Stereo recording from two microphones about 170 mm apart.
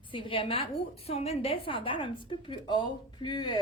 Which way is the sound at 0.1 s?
30° left (ahead or behind).